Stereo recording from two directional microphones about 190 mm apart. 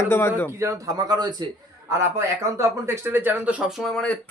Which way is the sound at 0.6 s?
20° right (ahead or behind).